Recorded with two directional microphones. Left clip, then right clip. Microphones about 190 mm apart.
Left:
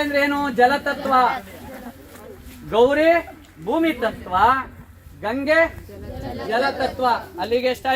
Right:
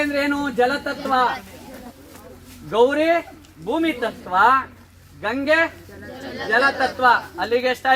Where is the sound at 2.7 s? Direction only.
25° left (ahead or behind).